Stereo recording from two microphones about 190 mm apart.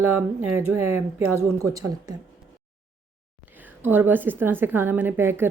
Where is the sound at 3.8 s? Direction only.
10° right (ahead or behind).